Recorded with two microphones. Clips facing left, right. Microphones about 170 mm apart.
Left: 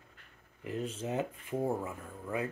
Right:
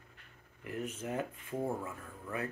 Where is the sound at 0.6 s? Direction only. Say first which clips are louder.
Left 3 dB; 25° left (ahead or behind).